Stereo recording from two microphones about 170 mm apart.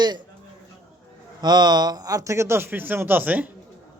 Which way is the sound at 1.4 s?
25° right (ahead or behind).